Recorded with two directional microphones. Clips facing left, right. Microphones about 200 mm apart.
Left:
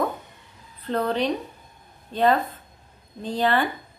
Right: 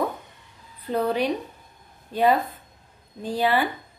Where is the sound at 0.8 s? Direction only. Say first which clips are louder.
Even; 10° right (ahead or behind).